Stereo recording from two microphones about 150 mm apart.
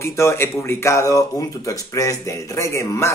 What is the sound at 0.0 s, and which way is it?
Speech, 20° left (ahead or behind).